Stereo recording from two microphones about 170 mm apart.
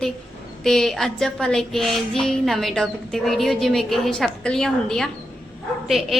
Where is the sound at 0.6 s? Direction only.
Centre (ahead or behind).